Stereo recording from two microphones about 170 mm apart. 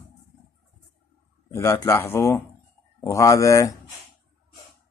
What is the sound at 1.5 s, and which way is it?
Speech, 15° left (ahead or behind).